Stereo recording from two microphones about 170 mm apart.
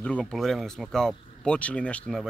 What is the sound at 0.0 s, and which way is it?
A man's voice, 5° left (ahead or behind).